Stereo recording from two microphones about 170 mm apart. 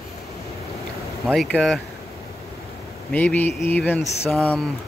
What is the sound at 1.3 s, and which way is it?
Speech, 5° left (ahead or behind).